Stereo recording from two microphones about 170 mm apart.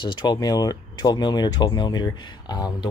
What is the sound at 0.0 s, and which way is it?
Speech, 25° left (ahead or behind).